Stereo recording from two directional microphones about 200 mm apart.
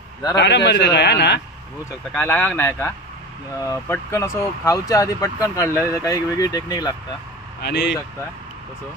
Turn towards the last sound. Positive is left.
turn(degrees=55)  # may be behind; listen again after turning